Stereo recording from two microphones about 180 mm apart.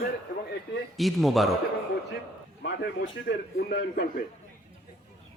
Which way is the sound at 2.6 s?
75° left (ahead or behind).